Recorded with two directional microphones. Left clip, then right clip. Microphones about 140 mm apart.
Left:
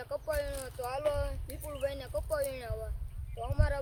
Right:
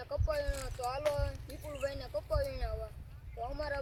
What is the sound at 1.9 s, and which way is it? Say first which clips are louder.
Speech: left 3 dB; 40° left (ahead or behind).